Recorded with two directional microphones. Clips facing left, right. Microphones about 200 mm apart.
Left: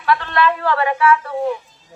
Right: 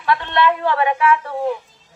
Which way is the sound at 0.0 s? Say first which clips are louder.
Even; 20° right (ahead or behind).